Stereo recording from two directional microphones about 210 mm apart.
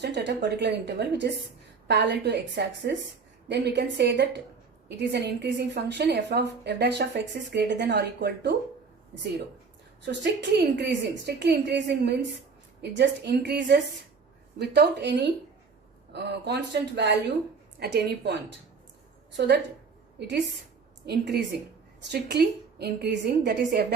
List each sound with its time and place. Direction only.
0.0 s a woman's voice: 55° right (ahead or behind)
10.1 s a woman's voice: 55° right (ahead or behind)
20.1 s a woman's voice: 55° right (ahead or behind)